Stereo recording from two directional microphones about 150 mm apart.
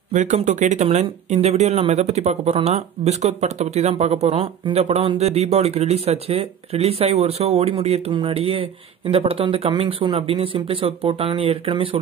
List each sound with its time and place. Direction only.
0.1 s speech: 55° right (ahead or behind); by 12.0 s 40° right (ahead or behind)